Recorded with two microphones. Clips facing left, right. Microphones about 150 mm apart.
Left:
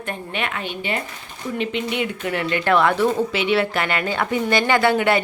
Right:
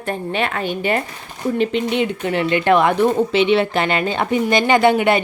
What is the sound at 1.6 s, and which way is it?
Speech, 35° right (ahead or behind).